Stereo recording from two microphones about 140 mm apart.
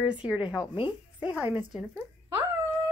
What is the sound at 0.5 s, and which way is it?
Speech, 35° left (ahead or behind).